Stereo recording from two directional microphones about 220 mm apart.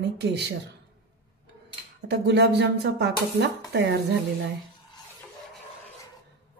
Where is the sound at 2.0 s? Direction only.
50° right (ahead or behind).